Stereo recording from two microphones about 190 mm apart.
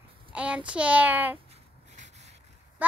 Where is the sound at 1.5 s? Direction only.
35° right (ahead or behind).